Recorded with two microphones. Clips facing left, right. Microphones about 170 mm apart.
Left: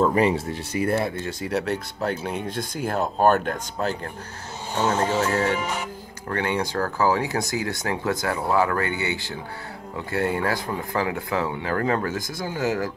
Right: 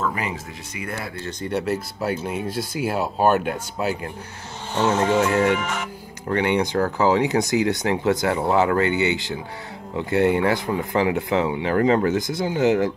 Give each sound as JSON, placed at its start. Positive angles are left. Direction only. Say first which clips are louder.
{"t": 0.0, "sound": "speech", "louder": "left 7 dB", "side_deg": 35}
{"t": 1.4, "sound": "speech", "louder": "right 2 dB", "side_deg": 0}
{"t": 5.6, "sound": "music", "louder": "right 1 dB", "side_deg": 10}
{"t": 6.2, "sound": "speech", "louder": "right 5 dB", "side_deg": -20}